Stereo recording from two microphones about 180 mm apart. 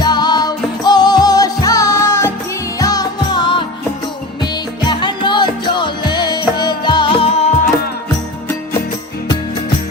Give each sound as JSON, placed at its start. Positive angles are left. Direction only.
{"t": 0.0, "sound": "music", "side_deg": 25}